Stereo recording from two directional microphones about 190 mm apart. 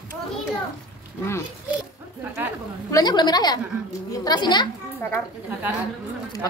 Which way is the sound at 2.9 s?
20° left (ahead or behind).